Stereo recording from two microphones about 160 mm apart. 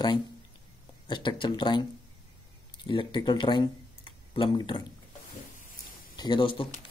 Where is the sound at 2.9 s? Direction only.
30° left (ahead or behind).